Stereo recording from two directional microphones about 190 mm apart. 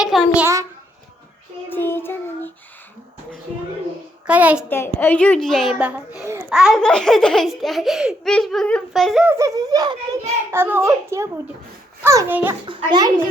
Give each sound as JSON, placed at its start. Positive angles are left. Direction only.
{"t": 0.0, "sound": "a sound", "side_deg": 0}
{"t": 1.7, "sound": "child singing", "side_deg": 10}
{"t": 4.3, "sound": "a child's voice", "side_deg": -5}
{"t": 4.9, "sound": "a child's voice", "side_deg": 10}
{"t": 9.3, "sound": "a child's voice", "side_deg": -15}
{"t": 12.6, "sound": "a child's voice", "side_deg": -25}